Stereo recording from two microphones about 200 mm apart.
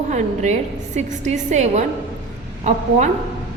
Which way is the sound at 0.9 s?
35° right (ahead or behind).